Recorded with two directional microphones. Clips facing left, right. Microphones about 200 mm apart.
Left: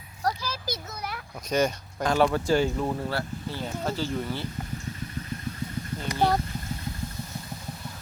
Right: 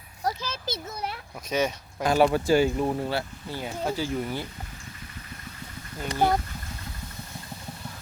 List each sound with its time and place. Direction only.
0.3 s a child's voice: 25° right (ahead or behind)
1.5 s speech: 5° right (ahead or behind)
6.1 s speech: 15° right (ahead or behind)